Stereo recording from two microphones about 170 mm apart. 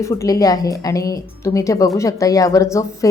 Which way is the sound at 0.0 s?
20° left (ahead or behind).